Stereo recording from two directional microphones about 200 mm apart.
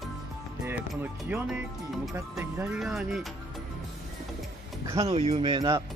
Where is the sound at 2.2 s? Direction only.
15° right (ahead or behind).